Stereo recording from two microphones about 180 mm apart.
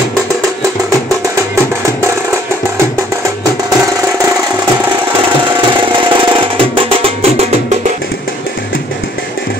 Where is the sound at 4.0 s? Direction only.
15° right (ahead or behind).